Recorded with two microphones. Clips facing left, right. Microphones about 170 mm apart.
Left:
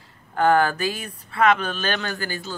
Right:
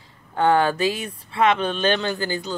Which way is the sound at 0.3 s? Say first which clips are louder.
Even; 25° right (ahead or behind).